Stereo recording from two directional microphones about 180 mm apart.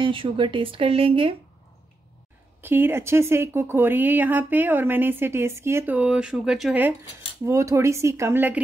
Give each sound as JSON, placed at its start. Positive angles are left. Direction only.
{"t": 0.0, "sound": "speech", "side_deg": -30}
{"t": 2.6, "sound": "speech", "side_deg": -10}
{"t": 7.4, "sound": "speech", "side_deg": -15}